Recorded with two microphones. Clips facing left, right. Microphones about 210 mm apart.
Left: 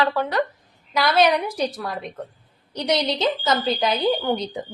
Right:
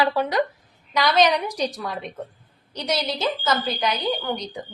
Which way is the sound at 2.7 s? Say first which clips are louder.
Left 4 dB; 15° left (ahead or behind).